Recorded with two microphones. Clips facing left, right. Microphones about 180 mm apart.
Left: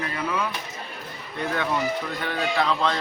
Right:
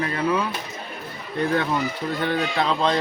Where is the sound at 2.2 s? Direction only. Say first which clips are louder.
Right 2 dB; 25° right (ahead or behind).